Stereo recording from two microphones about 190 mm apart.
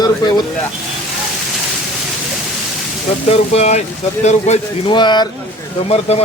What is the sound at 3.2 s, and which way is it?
Speech, 35° left (ahead or behind).